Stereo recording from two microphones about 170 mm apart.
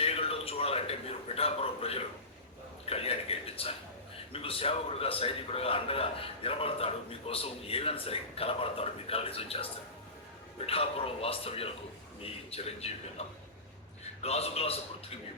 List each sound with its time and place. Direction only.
0.0 s a man's voice: 35° left (ahead or behind)
10.7 s a man's voice: 35° left (ahead or behind)